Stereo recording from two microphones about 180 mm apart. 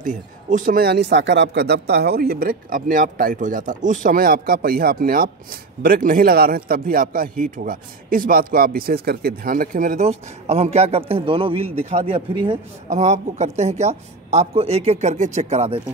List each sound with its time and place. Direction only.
0.0 s speech: 45° right (ahead or behind)